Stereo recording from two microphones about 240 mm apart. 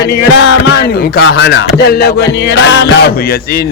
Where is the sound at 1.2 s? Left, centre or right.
Left.